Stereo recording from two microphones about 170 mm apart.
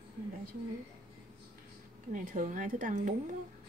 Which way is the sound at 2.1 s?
50° right (ahead or behind).